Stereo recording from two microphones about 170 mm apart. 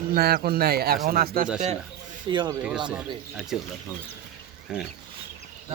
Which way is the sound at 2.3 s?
25° right (ahead or behind).